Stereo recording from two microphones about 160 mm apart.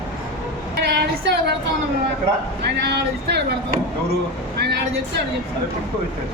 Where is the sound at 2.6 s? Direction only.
90° right.